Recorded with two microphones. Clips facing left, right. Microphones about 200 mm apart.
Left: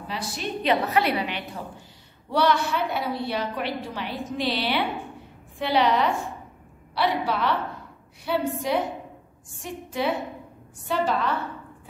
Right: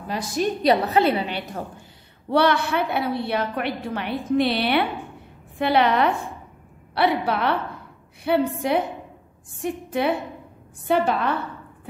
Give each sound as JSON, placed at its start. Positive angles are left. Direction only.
{"t": 0.1, "sound": "a woman's voice", "side_deg": -45}
{"t": 2.2, "sound": "a woman's voice", "side_deg": -60}